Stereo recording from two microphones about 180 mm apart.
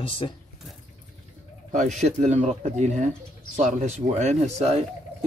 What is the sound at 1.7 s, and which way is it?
Speech, 45° right (ahead or behind).